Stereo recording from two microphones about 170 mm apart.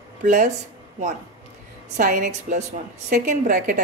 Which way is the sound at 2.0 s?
50° right (ahead or behind).